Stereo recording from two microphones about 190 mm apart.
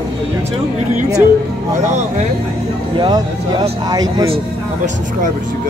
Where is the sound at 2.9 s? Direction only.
20° right (ahead or behind).